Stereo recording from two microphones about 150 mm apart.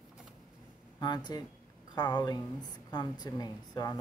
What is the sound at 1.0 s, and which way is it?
Speech, 25° left (ahead or behind).